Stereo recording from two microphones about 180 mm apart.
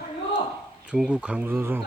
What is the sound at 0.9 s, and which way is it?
Speech, 5° right (ahead or behind).